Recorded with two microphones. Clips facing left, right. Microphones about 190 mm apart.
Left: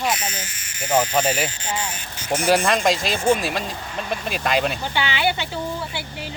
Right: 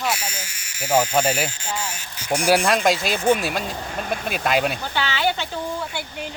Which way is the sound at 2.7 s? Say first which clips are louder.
Even; centre (ahead or behind).